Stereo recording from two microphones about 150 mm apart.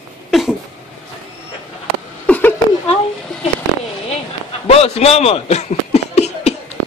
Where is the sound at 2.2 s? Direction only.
10° left (ahead or behind).